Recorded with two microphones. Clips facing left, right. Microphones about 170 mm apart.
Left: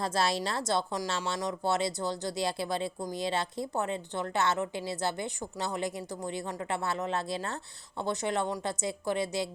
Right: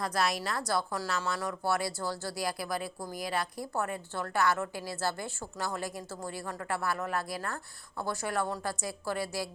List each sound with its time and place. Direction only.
0.0 s speech: 25° left (ahead or behind)